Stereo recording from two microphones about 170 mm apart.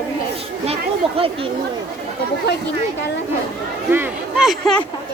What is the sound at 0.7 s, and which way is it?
Speech, 35° right (ahead or behind).